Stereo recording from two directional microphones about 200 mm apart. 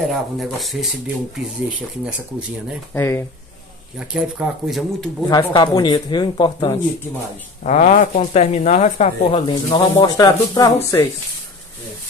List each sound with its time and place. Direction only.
0.1 s speech: centre (ahead or behind)
2.9 s speech: 10° left (ahead or behind)
4.1 s speech: 5° right (ahead or behind)
5.3 s speech: 20° left (ahead or behind)
7.6 s speech: 40° left (ahead or behind)
9.3 s speech: 20° left (ahead or behind)